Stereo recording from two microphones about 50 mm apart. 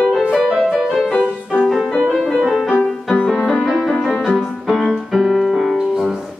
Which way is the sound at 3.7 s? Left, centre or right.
Centre.